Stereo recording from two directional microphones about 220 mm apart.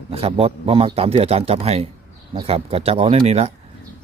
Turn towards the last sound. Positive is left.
turn(degrees=-30)  # may be behind; listen again after turning